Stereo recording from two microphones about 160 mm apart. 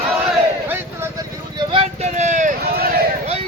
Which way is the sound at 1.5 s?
40° right (ahead or behind).